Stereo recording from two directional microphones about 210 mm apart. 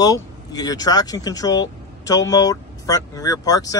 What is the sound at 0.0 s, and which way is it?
Speech, 15° left (ahead or behind).